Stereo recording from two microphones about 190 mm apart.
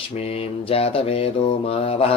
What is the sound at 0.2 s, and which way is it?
Mantra, 30° left (ahead or behind).